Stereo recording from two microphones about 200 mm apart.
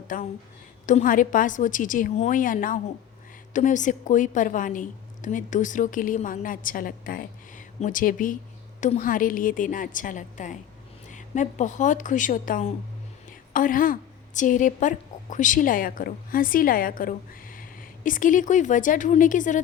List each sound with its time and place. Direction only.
0.1 s a woman's voice: 45° left (ahead or behind)